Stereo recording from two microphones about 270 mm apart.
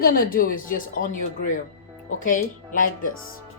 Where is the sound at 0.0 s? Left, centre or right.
Left.